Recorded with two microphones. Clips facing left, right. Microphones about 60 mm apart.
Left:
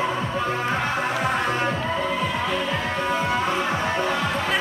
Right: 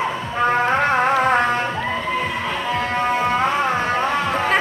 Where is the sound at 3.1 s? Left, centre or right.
Right.